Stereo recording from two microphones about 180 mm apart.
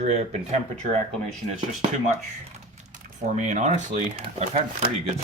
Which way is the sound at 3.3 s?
40° right (ahead or behind).